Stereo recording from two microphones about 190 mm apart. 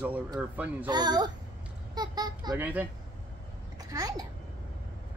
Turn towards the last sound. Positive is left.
turn(degrees=-20)  # may be behind; listen again after turning